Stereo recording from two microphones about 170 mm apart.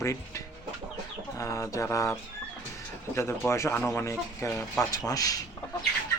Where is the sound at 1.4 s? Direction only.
15° left (ahead or behind).